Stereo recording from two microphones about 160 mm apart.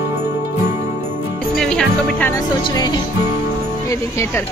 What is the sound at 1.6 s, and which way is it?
Speech, 5° left (ahead or behind).